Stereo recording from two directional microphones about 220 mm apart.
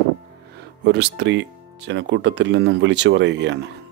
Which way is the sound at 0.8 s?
50° right (ahead or behind).